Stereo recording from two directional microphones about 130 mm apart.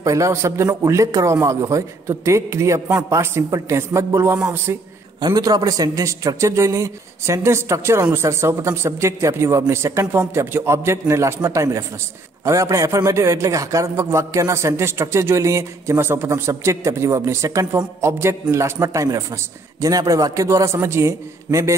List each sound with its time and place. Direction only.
0.0 s a man's voice: 25° right (ahead or behind)